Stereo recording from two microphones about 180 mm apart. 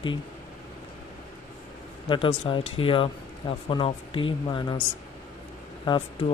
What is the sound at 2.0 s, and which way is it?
Speech, 30° left (ahead or behind).